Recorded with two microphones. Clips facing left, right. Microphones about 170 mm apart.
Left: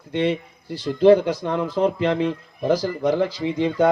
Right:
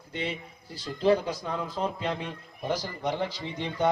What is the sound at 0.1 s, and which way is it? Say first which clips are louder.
Speech: left 12 dB; 70° left (ahead or behind).